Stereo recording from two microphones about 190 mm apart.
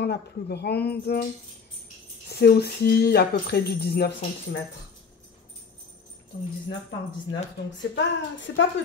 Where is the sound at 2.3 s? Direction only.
60° left (ahead or behind).